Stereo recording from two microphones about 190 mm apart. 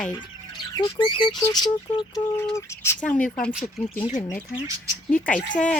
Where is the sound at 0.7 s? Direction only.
25° left (ahead or behind).